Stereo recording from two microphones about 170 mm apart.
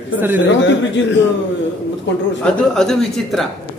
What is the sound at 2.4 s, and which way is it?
A man's voice, 5° left (ahead or behind).